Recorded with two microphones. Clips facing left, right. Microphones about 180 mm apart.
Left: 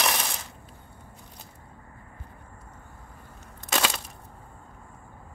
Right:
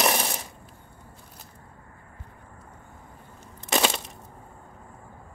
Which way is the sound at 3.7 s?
25° right (ahead or behind).